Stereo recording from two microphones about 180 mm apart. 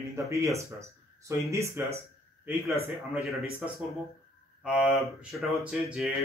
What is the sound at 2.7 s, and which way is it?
Speech, centre (ahead or behind).